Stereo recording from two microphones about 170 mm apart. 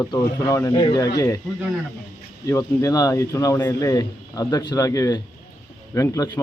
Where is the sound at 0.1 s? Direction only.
20° left (ahead or behind).